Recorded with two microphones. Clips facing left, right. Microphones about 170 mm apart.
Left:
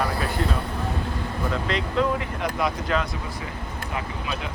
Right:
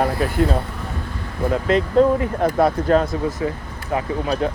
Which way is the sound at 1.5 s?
50° right (ahead or behind).